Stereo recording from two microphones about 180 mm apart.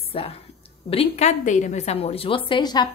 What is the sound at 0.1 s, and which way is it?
A woman's voice, 30° left (ahead or behind).